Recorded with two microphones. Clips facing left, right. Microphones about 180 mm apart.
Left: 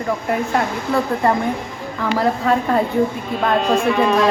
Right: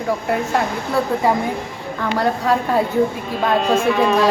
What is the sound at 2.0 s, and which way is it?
Speech, centre (ahead or behind).